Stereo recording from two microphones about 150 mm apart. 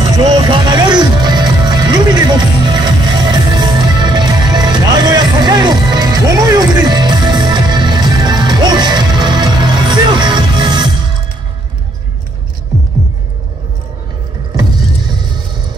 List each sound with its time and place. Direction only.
0.0 s music: 25° right (ahead or behind)